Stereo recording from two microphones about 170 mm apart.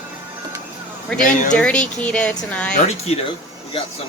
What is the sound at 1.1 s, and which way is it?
A woman's voice, 5° left (ahead or behind).